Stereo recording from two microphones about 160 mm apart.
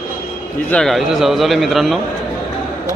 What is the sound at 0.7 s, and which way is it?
Speech, 5° left (ahead or behind).